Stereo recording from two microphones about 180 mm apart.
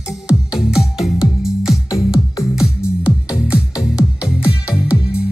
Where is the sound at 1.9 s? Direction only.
15° left (ahead or behind).